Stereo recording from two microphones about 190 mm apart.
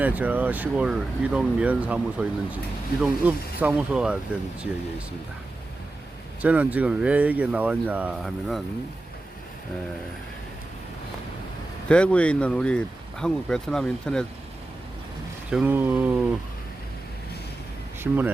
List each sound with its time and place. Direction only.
0.0 s speech: 10° right (ahead or behind)
6.4 s speech: 10° right (ahead or behind)
11.9 s speech: 5° left (ahead or behind)
15.4 s speech: 5° right (ahead or behind)
18.0 s speech: 5° right (ahead or behind)